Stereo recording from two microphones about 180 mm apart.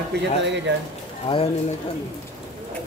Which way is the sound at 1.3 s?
30° left (ahead or behind).